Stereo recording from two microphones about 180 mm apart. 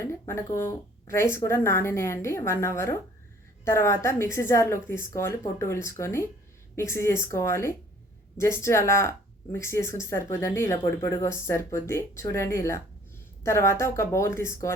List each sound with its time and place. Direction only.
0.0 s a woman's voice: 15° left (ahead or behind)